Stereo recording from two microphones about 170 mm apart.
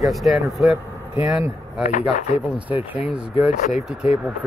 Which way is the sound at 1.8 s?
50° left (ahead or behind).